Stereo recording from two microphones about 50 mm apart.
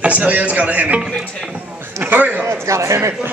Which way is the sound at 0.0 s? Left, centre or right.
Right.